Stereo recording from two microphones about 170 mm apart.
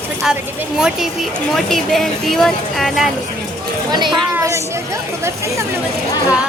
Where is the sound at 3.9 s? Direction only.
25° right (ahead or behind).